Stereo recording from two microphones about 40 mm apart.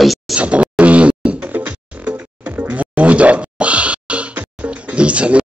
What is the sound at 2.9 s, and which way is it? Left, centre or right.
Music, right.